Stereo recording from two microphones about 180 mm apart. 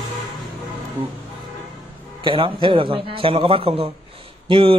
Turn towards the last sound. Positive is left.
turn(degrees=-30)  # may be behind; listen again after turning